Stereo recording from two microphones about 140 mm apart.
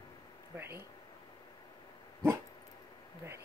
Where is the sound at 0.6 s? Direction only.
20° right (ahead or behind).